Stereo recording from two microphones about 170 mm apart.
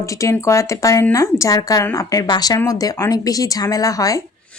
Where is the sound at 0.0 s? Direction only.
20° left (ahead or behind).